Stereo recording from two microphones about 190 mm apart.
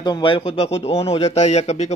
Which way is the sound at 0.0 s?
25° left (ahead or behind).